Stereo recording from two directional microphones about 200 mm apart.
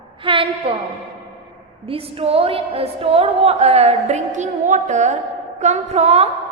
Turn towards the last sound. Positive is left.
turn(degrees=-30)  # may be behind; listen again after turning